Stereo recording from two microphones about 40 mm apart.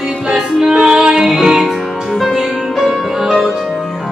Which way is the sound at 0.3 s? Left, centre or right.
Centre.